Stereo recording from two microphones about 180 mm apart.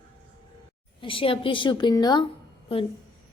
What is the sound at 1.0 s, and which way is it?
A woman's voice, 30° left (ahead or behind).